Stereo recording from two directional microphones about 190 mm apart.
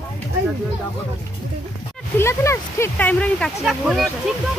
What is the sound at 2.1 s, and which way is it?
Speech, 15° left (ahead or behind).